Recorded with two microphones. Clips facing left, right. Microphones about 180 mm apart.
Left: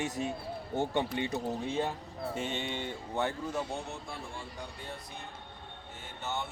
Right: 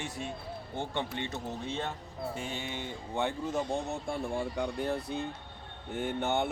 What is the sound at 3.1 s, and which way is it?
Speech, 15° right (ahead or behind).